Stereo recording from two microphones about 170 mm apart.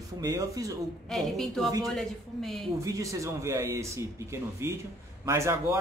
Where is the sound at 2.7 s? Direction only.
20° right (ahead or behind).